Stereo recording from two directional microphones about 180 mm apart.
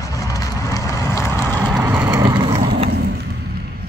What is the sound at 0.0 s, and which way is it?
Vehicle, 20° left (ahead or behind).